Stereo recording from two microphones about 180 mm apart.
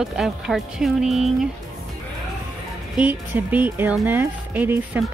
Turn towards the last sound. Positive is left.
turn(degrees=-10)  # may be behind; listen again after turning